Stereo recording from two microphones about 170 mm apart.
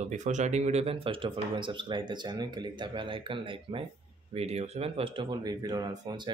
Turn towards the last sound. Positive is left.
turn(degrees=-25)  # may be behind; listen again after turning